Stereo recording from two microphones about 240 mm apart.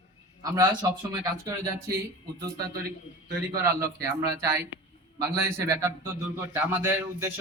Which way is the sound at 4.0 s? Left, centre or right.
Centre.